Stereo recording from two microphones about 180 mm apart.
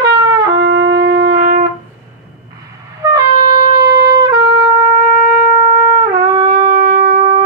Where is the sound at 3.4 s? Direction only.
50° left (ahead or behind).